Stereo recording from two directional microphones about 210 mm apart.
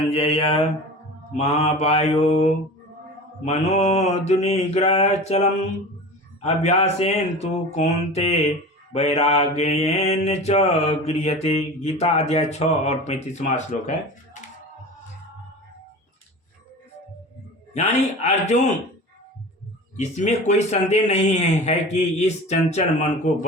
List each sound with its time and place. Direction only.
0.1 s mantra: 25° left (ahead or behind)
1.4 s a man's voice: 30° left (ahead or behind)
8.9 s mantra: 30° left (ahead or behind)
17.7 s a man's voice: 30° left (ahead or behind)
20.0 s a man's voice: 35° left (ahead or behind)